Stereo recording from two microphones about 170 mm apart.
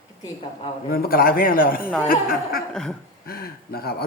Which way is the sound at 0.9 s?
60° left (ahead or behind).